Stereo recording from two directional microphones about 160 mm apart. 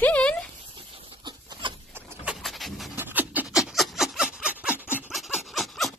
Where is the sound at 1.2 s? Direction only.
30° right (ahead or behind).